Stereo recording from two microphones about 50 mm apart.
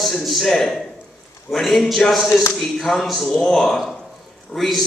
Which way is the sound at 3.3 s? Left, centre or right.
Centre.